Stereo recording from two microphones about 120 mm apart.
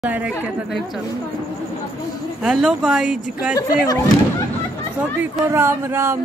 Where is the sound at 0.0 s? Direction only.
10° right (ahead or behind).